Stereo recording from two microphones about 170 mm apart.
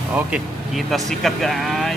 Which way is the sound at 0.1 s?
5° right (ahead or behind).